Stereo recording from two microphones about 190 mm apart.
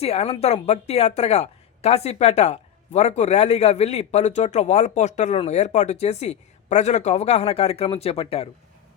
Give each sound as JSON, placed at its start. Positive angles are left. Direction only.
{"t": 0.0, "sound": "a woman's voice", "side_deg": 30}